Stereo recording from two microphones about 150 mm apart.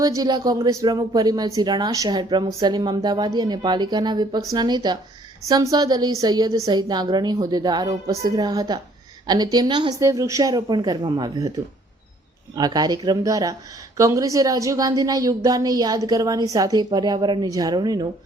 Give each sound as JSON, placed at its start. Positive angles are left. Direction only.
{"t": 0.0, "sound": "speech", "side_deg": -25}
{"t": 10.0, "sound": "speech", "side_deg": -20}
{"t": 12.5, "sound": "speech", "side_deg": -25}